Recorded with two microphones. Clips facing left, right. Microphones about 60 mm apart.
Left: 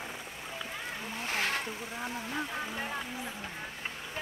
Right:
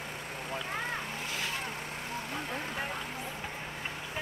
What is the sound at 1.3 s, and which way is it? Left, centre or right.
Vehicle, left.